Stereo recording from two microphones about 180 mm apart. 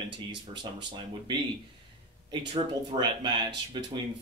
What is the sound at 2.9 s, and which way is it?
Speech, 25° right (ahead or behind).